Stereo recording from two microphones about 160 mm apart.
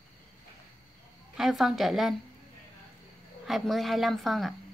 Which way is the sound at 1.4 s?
Centre (ahead or behind).